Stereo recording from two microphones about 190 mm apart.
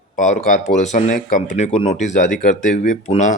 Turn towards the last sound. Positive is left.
turn(degrees=40)  # may be behind; listen again after turning